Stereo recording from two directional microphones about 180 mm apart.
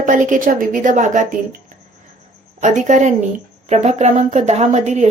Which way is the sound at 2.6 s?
40° right (ahead or behind).